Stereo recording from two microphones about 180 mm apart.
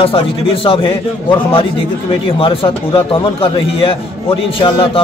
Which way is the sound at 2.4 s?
30° left (ahead or behind).